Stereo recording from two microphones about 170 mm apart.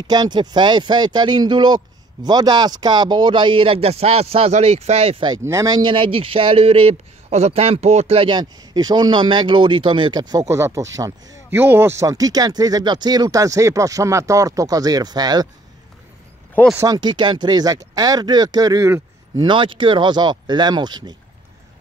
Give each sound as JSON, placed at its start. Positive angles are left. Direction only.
{"t": 0.0, "sound": "speech", "side_deg": -25}
{"t": 5.4, "sound": "speech", "side_deg": -15}
{"t": 16.7, "sound": "speech", "side_deg": -20}
{"t": 19.3, "sound": "speech", "side_deg": -30}